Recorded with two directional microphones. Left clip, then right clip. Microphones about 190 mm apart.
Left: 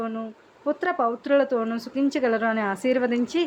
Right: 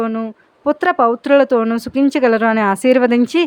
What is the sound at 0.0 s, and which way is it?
A woman's voice, 35° right (ahead or behind).